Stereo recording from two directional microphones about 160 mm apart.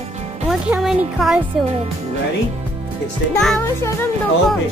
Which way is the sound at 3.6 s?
15° left (ahead or behind).